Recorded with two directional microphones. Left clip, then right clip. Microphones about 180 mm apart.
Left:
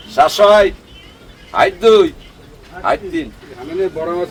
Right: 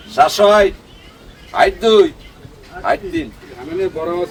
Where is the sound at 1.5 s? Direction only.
10° left (ahead or behind).